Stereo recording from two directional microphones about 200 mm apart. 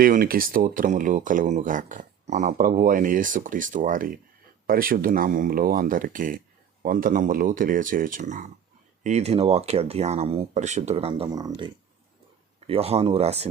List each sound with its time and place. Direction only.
0.0 s speech: 45° right (ahead or behind)